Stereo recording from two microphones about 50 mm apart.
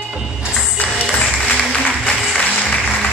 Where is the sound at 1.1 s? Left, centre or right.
Left.